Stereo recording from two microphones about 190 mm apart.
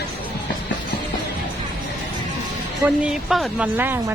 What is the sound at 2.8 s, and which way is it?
Speech, 5° right (ahead or behind).